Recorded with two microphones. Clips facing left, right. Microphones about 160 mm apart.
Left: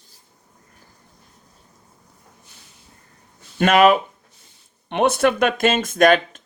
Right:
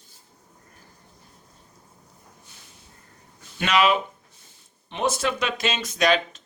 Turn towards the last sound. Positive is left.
turn(degrees=50)  # may be behind; listen again after turning